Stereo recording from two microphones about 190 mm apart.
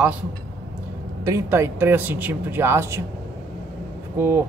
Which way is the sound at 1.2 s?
15° right (ahead or behind).